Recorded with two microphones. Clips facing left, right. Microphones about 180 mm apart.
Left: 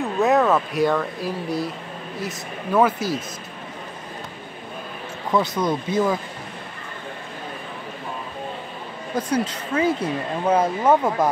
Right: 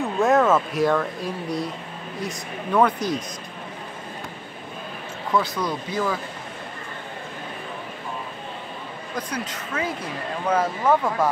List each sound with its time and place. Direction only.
0.2 s speech: centre (ahead or behind)
5.3 s speech: 20° left (ahead or behind)
9.1 s speech: 25° left (ahead or behind)